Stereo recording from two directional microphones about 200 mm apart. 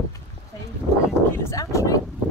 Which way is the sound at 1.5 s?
15° left (ahead or behind).